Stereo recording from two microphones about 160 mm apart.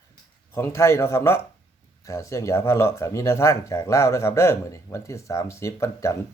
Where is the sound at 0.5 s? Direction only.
15° left (ahead or behind).